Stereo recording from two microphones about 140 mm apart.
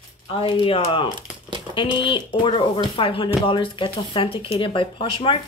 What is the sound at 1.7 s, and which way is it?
Speech, 35° left (ahead or behind).